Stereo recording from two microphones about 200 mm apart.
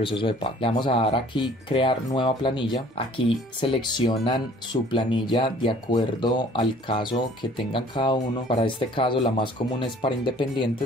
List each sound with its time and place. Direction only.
0.0 s speech: 25° left (ahead or behind)